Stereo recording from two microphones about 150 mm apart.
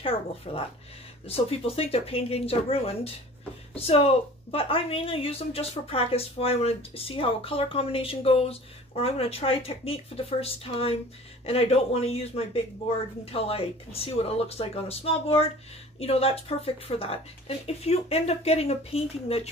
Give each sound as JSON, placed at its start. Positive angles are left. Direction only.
{"t": 0.0, "sound": "speech", "side_deg": 40}